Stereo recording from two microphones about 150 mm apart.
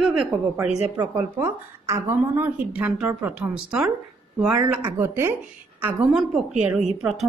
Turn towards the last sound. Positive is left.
turn(degrees=-5)  # may be behind; listen again after turning